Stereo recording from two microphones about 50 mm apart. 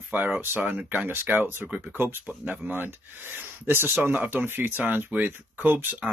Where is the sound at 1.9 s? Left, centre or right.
Right.